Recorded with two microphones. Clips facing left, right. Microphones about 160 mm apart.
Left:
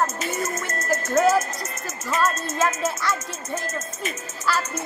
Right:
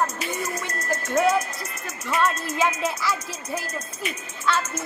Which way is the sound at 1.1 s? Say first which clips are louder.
Left 2 dB; centre (ahead or behind).